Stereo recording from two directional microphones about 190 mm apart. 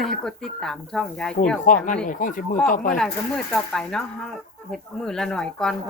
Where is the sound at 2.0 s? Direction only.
45° left (ahead or behind).